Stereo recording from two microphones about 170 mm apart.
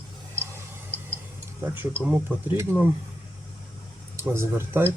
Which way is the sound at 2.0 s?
10° right (ahead or behind).